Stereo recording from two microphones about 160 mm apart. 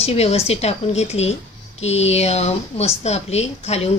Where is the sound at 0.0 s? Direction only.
40° left (ahead or behind).